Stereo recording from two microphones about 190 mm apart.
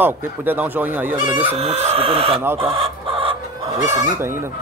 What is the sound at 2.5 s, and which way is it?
Chicken, 30° right (ahead or behind).